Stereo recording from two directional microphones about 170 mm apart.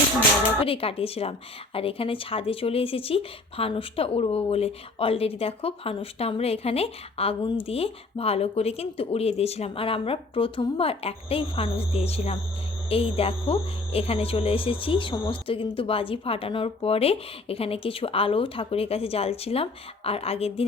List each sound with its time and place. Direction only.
0.6 s speech: 35° left (ahead or behind)